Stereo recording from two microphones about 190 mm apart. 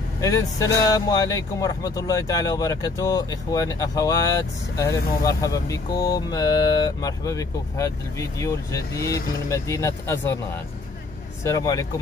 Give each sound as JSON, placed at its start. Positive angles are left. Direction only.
{"t": 0.2, "sound": "speech", "side_deg": 15}
{"t": 11.4, "sound": "speech", "side_deg": 20}